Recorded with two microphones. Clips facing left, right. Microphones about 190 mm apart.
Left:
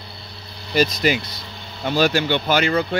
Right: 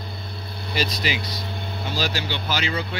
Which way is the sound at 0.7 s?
50° left (ahead or behind).